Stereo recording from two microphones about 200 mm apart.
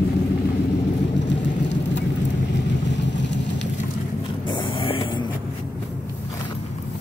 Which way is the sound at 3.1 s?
60° left (ahead or behind).